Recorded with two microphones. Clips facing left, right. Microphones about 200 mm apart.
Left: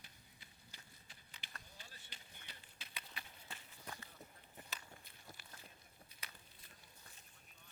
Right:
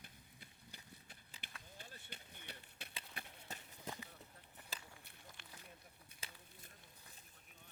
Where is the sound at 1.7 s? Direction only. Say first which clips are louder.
Right 5 dB; 55° right (ahead or behind).